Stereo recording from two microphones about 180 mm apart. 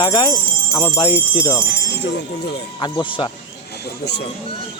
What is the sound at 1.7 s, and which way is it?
Speech, 70° left (ahead or behind).